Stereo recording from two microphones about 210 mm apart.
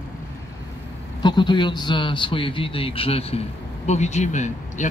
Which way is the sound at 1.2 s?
20° left (ahead or behind).